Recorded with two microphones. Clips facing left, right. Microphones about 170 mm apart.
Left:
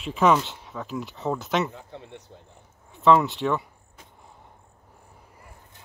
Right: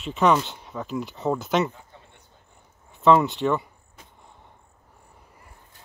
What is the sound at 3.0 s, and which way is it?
Speech, centre (ahead or behind).